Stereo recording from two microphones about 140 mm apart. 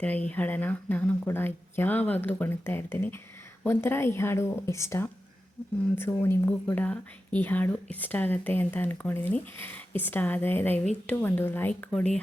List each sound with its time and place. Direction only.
0.0 s speech: 10° left (ahead or behind)